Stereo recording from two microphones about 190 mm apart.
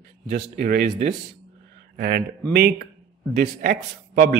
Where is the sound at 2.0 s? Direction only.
55° right (ahead or behind).